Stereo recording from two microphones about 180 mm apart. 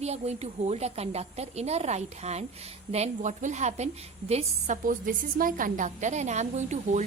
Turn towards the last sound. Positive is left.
turn(degrees=-40)  # may be behind; listen again after turning